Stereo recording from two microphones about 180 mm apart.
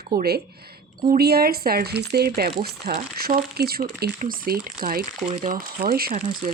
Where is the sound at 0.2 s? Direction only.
60° right (ahead or behind).